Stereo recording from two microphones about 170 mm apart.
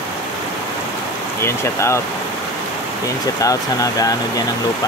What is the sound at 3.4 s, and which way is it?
Speech, 20° left (ahead or behind).